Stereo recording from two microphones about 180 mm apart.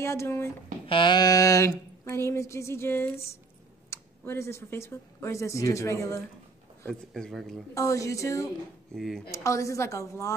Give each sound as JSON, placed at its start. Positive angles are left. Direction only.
{"t": 0.0, "sound": "speech", "side_deg": 15}
{"t": 0.8, "sound": "speech", "side_deg": 25}
{"t": 6.8, "sound": "speech", "side_deg": 5}
{"t": 7.7, "sound": "speech", "side_deg": 15}
{"t": 8.9, "sound": "speech", "side_deg": 0}
{"t": 9.3, "sound": "speech", "side_deg": 15}